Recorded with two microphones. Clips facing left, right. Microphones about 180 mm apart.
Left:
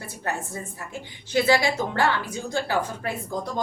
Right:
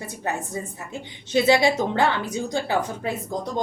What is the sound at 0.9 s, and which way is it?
Speech, 20° right (ahead or behind).